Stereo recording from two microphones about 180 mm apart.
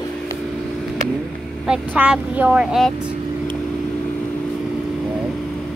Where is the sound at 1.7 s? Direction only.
5° right (ahead or behind).